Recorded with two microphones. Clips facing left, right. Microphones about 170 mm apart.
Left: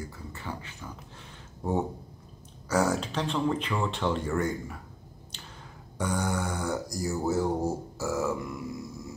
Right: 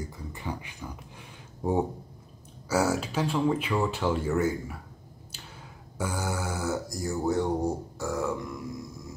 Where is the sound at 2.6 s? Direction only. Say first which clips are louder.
Even; 5° right (ahead or behind).